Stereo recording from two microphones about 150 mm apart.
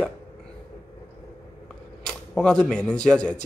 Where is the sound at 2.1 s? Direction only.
5° left (ahead or behind).